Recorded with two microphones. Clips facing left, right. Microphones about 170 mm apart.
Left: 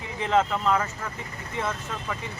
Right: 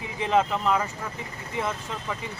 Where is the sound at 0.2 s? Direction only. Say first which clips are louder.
Even; 15° right (ahead or behind).